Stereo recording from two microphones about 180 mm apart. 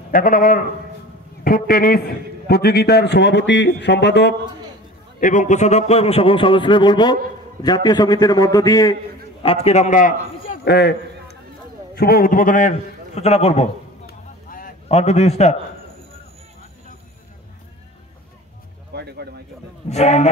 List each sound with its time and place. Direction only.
0.1 s a man's voice: 50° left (ahead or behind); by 4.4 s 70° left (ahead or behind)
5.2 s a man's voice: 45° left (ahead or behind); by 8.9 s 20° left (ahead or behind)
9.4 s a man's voice: 35° left (ahead or behind)
10.6 s a sound: 65° left (ahead or behind)
11.9 s a man's voice: 60° left (ahead or behind); by 13.7 s 35° left (ahead or behind)
14.0 s vehicle: 50° left (ahead or behind)
14.9 s a man's voice: 35° left (ahead or behind)
18.9 s speech: 65° right (ahead or behind)
19.9 s a man's voice: 40° left (ahead or behind)